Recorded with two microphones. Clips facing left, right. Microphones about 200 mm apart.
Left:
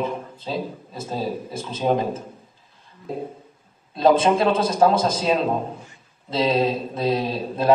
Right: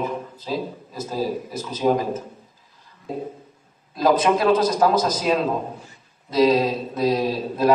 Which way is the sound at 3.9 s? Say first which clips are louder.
Left 1 dB; 25° left (ahead or behind).